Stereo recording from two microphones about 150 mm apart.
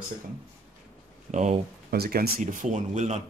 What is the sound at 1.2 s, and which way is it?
Speech, 50° right (ahead or behind).